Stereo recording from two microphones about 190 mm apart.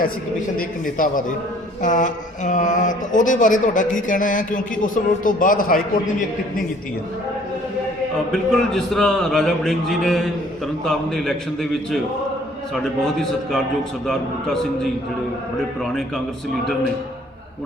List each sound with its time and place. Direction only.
0.5 s speech: 45° left (ahead or behind)
8.3 s speech: centre (ahead or behind)
15.8 s speech: centre (ahead or behind)